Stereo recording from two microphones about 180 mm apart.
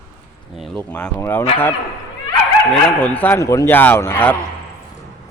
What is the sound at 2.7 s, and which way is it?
A man's voice, 5° left (ahead or behind).